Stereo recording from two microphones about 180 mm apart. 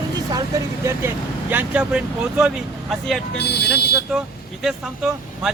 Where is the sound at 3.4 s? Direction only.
65° left (ahead or behind).